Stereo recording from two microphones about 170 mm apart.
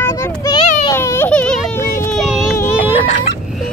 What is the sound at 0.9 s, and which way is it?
Baby cry, 15° left (ahead or behind).